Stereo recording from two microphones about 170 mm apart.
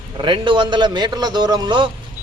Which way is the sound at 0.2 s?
30° right (ahead or behind).